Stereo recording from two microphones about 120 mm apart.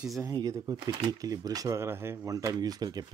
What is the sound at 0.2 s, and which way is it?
Speech, 30° right (ahead or behind).